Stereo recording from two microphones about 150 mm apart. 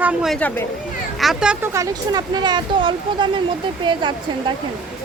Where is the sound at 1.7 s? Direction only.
25° right (ahead or behind).